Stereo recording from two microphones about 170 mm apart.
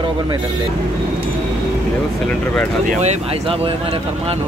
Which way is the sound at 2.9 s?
40° right (ahead or behind).